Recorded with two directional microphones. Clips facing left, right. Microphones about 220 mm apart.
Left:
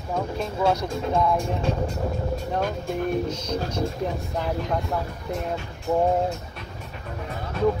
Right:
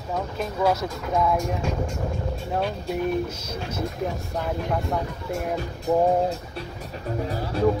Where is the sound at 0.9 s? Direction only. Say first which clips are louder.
Left 1 dB; 30° left (ahead or behind).